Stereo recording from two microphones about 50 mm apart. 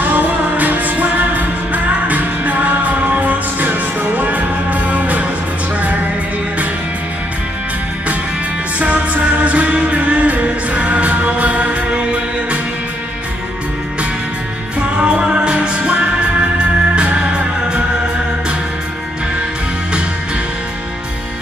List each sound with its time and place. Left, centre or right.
0.0 s music: right
8.7 s music: right
14.8 s music: right